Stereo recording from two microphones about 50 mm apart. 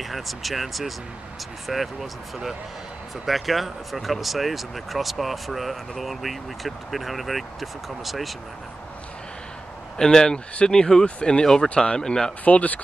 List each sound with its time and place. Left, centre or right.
0.0 s speech: centre
9.9 s speech: centre
12.4 s speech: left